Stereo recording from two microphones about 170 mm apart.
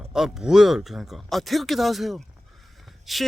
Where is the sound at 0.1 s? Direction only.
Centre (ahead or behind).